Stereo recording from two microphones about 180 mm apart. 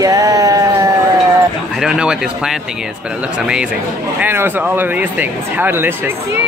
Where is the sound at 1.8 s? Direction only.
5° right (ahead or behind).